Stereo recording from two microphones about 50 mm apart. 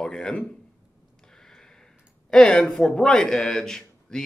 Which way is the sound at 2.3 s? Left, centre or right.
Centre.